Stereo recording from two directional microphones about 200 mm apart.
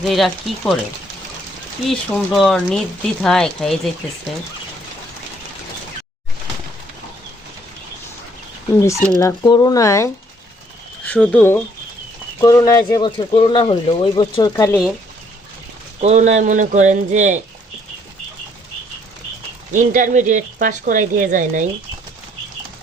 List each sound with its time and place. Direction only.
0.0 s speech: centre (ahead or behind)
1.9 s speech: centre (ahead or behind)
8.7 s speech: 15° left (ahead or behind)
14.5 s speech: 10° left (ahead or behind)
16.0 s speech: 35° right (ahead or behind)
19.7 s speech: 40° right (ahead or behind)